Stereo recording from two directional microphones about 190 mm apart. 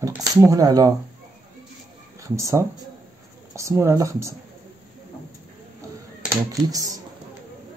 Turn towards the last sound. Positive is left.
turn(degrees=-20)  # may be behind; listen again after turning